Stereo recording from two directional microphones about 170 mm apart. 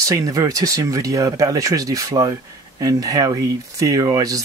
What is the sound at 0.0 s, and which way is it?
Speech, 20° right (ahead or behind).